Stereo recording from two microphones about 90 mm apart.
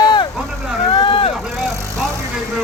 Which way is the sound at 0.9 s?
70° left (ahead or behind).